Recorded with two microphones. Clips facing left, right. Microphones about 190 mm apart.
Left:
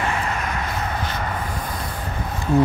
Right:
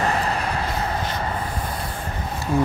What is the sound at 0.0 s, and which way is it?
Vehicle, 35° right (ahead or behind).